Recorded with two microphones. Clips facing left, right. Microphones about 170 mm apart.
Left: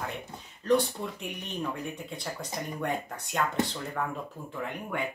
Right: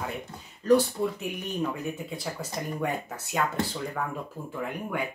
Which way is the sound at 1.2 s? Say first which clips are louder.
Right 4 dB; 5° right (ahead or behind).